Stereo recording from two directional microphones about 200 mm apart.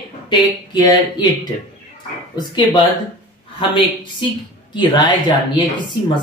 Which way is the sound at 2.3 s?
20° left (ahead or behind).